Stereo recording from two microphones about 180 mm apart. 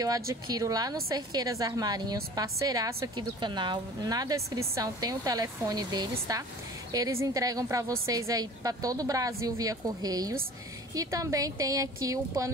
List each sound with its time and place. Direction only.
0.3 s a woman's voice: 20° right (ahead or behind)